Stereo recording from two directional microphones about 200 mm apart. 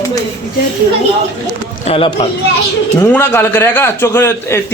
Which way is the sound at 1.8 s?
25° left (ahead or behind).